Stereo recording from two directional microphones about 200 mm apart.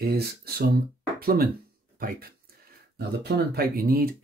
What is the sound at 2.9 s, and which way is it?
Speech, 55° right (ahead or behind).